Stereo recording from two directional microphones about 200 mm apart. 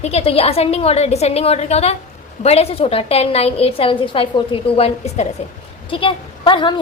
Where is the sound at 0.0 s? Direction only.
30° left (ahead or behind).